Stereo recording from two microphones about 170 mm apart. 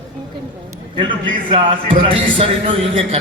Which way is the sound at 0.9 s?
30° right (ahead or behind).